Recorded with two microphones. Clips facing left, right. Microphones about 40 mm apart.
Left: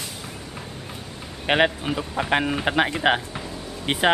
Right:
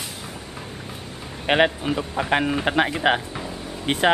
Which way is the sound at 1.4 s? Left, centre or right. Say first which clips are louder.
Right 1 dB; centre.